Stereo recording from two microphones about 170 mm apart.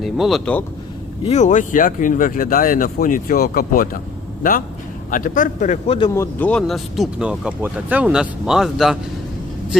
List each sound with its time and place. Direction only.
0.0 s speech: centre (ahead or behind)
1.3 s speech: 45° left (ahead or behind)
5.1 s speech: 50° left (ahead or behind)
6.1 s speech: 10° left (ahead or behind)